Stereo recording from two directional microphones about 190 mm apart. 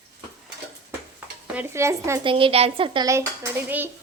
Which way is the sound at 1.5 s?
15° right (ahead or behind).